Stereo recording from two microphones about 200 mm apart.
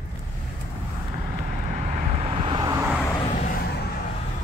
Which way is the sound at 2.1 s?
30° right (ahead or behind).